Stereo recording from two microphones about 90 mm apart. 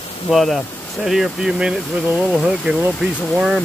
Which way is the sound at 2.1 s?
20° right (ahead or behind).